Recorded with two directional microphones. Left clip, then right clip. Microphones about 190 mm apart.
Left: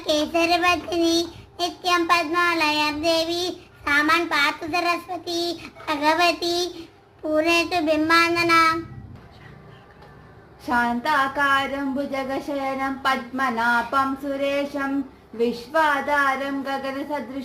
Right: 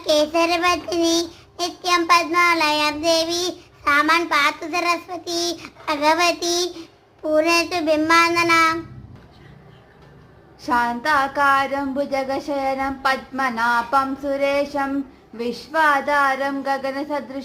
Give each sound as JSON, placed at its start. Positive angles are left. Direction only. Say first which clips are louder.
{"t": 0.0, "sound": "child singing", "louder": "right 4 dB", "side_deg": -15}
{"t": 10.7, "sound": "a woman's voice", "louder": "right 2 dB", "side_deg": -20}